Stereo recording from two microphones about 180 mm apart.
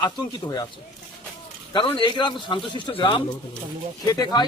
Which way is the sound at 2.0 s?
25° left (ahead or behind).